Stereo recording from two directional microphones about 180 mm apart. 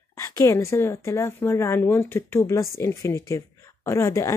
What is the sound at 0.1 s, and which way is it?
Speech, 15° left (ahead or behind).